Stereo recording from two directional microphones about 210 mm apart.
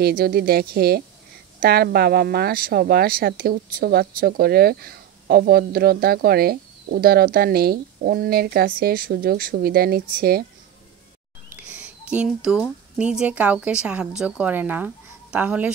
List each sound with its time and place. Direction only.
0.0 s speech: 45° right (ahead or behind)
11.4 s a child's voice: 5° right (ahead or behind)